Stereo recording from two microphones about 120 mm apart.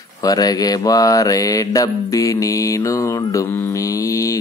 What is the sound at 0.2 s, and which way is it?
Mantra, 35° left (ahead or behind).